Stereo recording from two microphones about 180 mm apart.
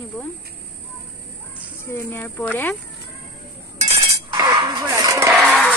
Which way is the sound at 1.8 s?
10° left (ahead or behind).